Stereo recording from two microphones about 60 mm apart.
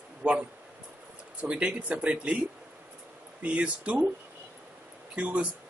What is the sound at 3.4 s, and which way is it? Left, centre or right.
Speech, right.